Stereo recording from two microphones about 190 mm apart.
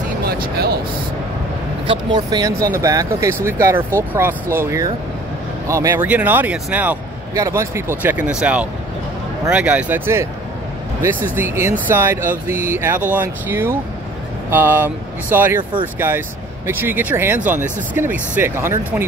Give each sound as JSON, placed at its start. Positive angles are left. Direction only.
{"t": 0.2, "sound": "speech", "side_deg": -55}
{"t": 1.9, "sound": "speech", "side_deg": -25}
{"t": 16.6, "sound": "speech", "side_deg": -10}